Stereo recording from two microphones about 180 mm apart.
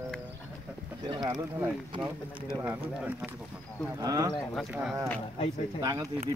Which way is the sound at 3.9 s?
20° right (ahead or behind).